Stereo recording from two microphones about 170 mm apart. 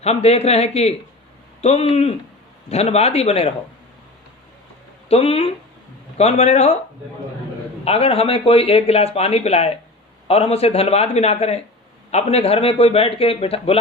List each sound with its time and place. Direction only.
0.0 s speech: 40° left (ahead or behind)
5.0 s speech: 35° left (ahead or behind)
7.9 s speech: 35° left (ahead or behind)